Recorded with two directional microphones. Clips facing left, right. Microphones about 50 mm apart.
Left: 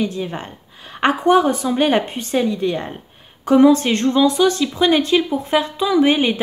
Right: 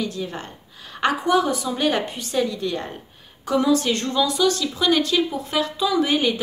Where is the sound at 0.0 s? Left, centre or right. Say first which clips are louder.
Left 5 dB; left.